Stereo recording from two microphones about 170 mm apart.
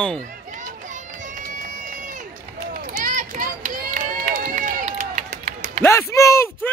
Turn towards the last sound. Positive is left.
turn(degrees=15)  # may be behind; listen again after turning